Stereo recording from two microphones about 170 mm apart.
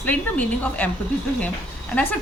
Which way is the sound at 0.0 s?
10° left (ahead or behind).